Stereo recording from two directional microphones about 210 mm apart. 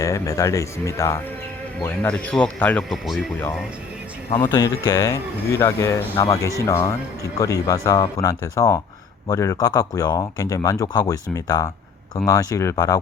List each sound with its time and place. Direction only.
0.0 s speech: 15° left (ahead or behind); by 3.2 s centre (ahead or behind)
4.4 s speech: 20° left (ahead or behind)
6.1 s speech: 25° left (ahead or behind)
6.7 s speech: 15° left (ahead or behind)